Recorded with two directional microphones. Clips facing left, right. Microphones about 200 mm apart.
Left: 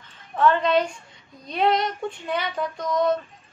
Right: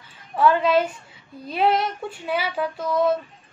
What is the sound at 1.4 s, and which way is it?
Child singing, 5° right (ahead or behind).